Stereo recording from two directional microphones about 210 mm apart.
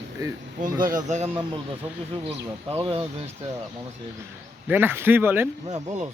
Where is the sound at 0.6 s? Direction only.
40° right (ahead or behind).